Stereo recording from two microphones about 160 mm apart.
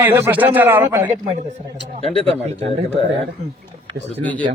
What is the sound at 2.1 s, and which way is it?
Speech, 40° right (ahead or behind).